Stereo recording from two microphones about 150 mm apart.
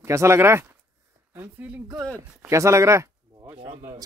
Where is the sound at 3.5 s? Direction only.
35° right (ahead or behind).